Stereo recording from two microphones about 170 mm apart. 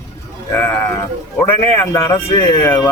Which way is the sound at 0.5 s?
15° left (ahead or behind).